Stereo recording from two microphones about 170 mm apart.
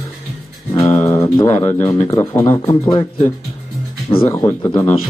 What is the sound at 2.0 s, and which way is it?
Speech, 20° left (ahead or behind).